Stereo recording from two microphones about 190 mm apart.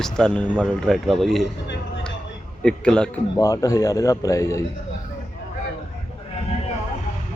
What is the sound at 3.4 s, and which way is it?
Speech, 20° left (ahead or behind).